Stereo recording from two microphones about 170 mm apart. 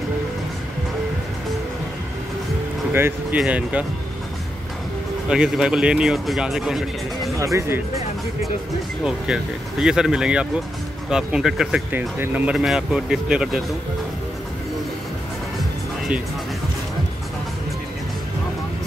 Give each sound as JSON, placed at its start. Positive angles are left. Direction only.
{"t": 2.9, "sound": "speech", "side_deg": -10}
{"t": 5.3, "sound": "speech", "side_deg": -5}
{"t": 7.3, "sound": "speech", "side_deg": -15}
{"t": 9.0, "sound": "speech", "side_deg": -5}